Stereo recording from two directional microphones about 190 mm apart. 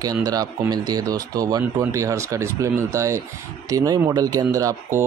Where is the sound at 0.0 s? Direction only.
20° right (ahead or behind).